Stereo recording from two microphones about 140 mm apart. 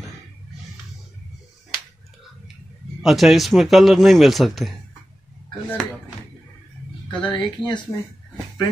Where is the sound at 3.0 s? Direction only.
Centre (ahead or behind).